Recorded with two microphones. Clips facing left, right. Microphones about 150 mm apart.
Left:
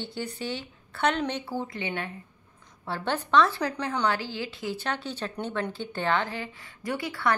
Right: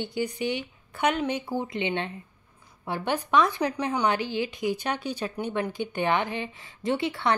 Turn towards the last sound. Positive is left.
turn(degrees=-25)  # may be behind; listen again after turning